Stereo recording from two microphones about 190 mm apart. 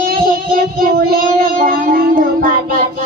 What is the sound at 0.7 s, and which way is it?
Child singing, 50° right (ahead or behind).